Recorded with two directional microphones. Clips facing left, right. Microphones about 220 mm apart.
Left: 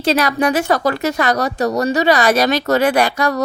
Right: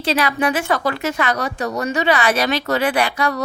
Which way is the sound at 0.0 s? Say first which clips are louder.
Left 3 dB; 45° left (ahead or behind).